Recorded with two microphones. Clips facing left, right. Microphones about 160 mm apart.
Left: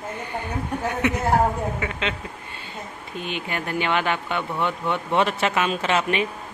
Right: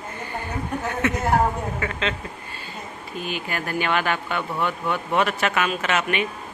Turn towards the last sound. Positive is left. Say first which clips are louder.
# left 1 dB
turn(degrees=25)  # may be behind; listen again after turning